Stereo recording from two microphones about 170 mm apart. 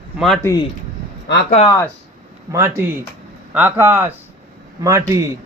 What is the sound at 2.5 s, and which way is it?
Speech, 15° right (ahead or behind).